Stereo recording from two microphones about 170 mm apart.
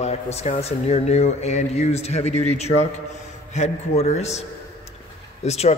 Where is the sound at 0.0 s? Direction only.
40° left (ahead or behind).